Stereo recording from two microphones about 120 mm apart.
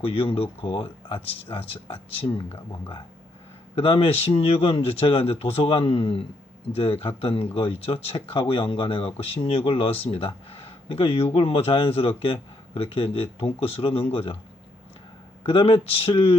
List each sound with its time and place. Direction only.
0.0 s speech: 50° left (ahead or behind)
3.8 s speech: 50° left (ahead or behind)
15.4 s speech: 50° left (ahead or behind)